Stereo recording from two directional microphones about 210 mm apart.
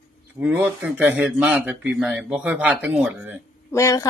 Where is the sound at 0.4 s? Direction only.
10° right (ahead or behind).